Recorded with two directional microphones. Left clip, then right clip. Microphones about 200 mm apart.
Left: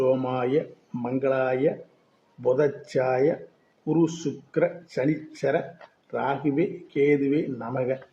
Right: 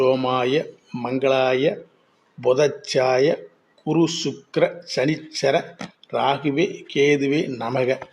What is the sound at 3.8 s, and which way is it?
Speech, 15° right (ahead or behind).